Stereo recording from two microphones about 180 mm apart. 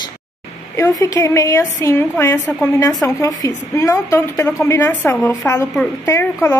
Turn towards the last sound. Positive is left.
turn(degrees=15)  # may be behind; listen again after turning